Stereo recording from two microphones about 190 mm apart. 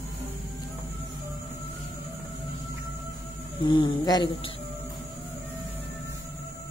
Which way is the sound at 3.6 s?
25° left (ahead or behind).